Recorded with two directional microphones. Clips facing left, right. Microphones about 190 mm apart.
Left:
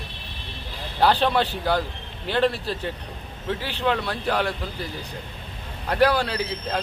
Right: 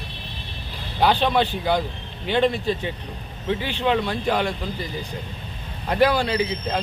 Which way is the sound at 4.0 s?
10° right (ahead or behind).